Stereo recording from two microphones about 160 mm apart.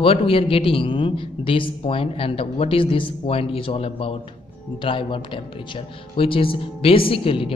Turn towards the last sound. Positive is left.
turn(degrees=35)  # may be behind; listen again after turning